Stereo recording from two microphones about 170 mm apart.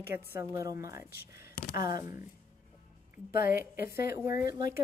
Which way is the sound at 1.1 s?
65° left (ahead or behind).